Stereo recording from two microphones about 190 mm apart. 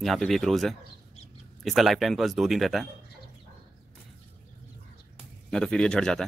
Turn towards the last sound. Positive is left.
turn(degrees=5)  # may be behind; listen again after turning